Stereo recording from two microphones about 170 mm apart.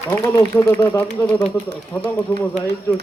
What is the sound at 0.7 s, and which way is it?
Speech, 15° left (ahead or behind).